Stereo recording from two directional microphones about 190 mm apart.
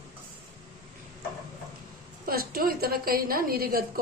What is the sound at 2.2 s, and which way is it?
A woman's voice, 50° right (ahead or behind).